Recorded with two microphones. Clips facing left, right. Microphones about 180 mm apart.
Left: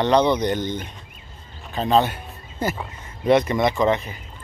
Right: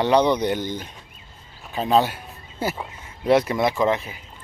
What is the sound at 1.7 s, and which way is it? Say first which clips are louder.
A man's voice: even; 5° right (ahead or behind).